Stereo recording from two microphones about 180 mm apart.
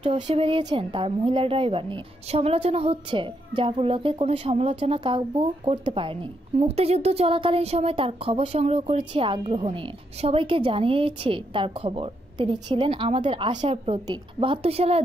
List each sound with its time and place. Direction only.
0.0 s speech: 30° right (ahead or behind)